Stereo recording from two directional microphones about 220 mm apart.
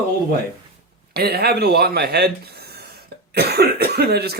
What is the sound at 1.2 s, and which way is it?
Speech, 45° right (ahead or behind).